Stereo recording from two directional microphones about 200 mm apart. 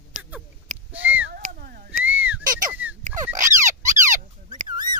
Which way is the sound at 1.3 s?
45° right (ahead or behind).